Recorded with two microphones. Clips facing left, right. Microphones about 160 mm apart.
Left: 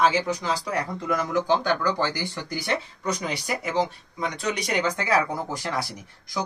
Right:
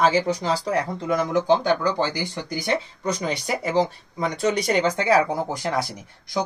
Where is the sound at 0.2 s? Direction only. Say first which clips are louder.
Right 3 dB; 30° right (ahead or behind).